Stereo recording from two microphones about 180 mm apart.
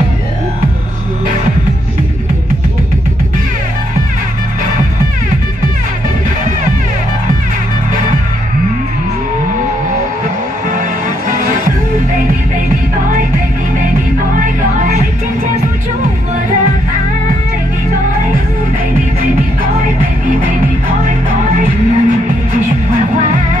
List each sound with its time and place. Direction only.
21.5 s music: 45° right (ahead or behind)